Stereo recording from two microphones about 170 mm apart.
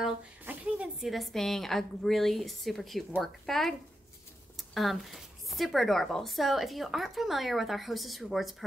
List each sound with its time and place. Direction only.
0.0 s a woman's voice: 5° right (ahead or behind)